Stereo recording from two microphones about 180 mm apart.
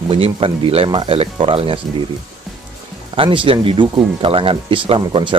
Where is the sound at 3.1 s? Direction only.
30° right (ahead or behind).